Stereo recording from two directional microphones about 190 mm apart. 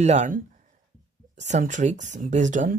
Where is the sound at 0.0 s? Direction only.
35° right (ahead or behind).